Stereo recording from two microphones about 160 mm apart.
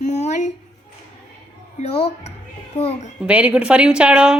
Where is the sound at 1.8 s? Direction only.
40° left (ahead or behind).